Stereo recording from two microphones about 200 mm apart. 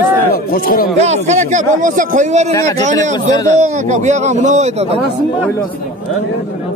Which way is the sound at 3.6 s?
35° right (ahead or behind).